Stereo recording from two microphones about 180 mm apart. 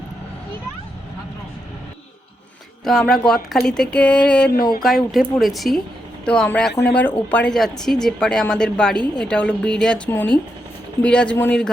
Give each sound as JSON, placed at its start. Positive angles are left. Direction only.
{"t": 2.8, "sound": "speech", "side_deg": 0}